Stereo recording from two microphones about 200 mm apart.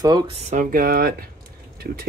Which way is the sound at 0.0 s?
20° right (ahead or behind).